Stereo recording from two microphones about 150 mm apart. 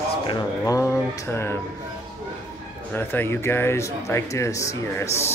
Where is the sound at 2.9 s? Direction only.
15° left (ahead or behind).